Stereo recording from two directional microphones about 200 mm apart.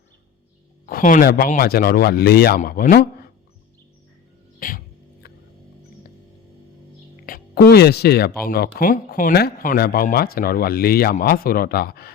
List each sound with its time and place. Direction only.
0.9 s speech: 45° left (ahead or behind)
4.6 s music: 45° left (ahead or behind)
7.3 s speech: 50° left (ahead or behind)